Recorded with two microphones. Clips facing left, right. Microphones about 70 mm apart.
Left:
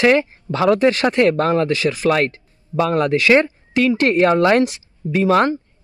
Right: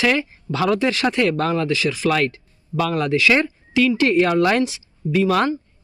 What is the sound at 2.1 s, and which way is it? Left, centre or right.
Speech, left.